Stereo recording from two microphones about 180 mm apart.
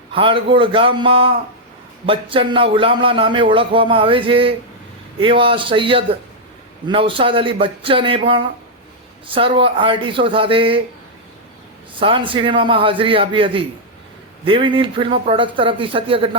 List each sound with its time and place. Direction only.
0.1 s speech: 30° right (ahead or behind)
11.9 s speech: 30° right (ahead or behind)